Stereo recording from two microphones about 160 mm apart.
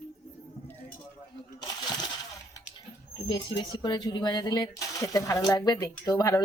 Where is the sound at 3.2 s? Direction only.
30° left (ahead or behind).